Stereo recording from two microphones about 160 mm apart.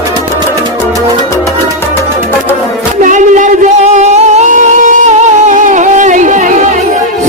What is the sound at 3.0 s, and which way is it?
Singing, 50° right (ahead or behind).